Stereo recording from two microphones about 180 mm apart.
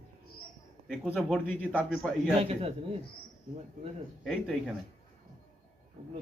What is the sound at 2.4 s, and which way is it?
Speech, 35° right (ahead or behind).